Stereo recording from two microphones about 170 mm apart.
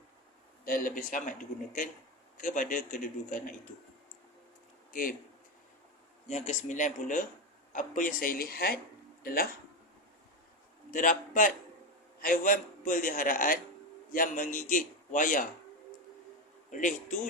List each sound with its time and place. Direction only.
0.6 s a man's voice: 55° left (ahead or behind)
4.9 s speech: 55° left (ahead or behind)
6.2 s a man's voice: 45° left (ahead or behind); by 9.5 s 60° left (ahead or behind)
10.9 s a man's voice: 50° left (ahead or behind)
16.7 s a man's voice: 50° left (ahead or behind)